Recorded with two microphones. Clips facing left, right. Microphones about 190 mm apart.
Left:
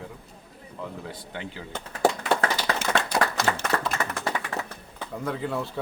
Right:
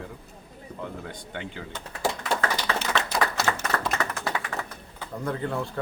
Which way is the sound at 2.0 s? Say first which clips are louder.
Left 4 dB; 55° left (ahead or behind).